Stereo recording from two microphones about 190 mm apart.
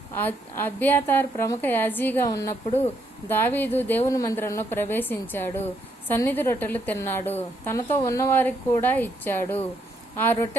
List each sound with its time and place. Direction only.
0.2 s a woman's voice: 10° left (ahead or behind)